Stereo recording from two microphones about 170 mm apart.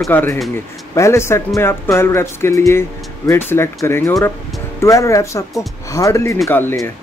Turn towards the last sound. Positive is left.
turn(degrees=15)  # may be behind; listen again after turning